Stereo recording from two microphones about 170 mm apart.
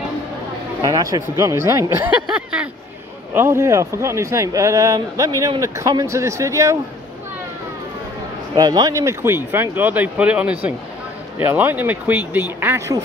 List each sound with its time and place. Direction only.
1.4 s speech: 15° right (ahead or behind)
2.3 s speech: 5° right (ahead or behind)
8.5 s speech: 20° right (ahead or behind)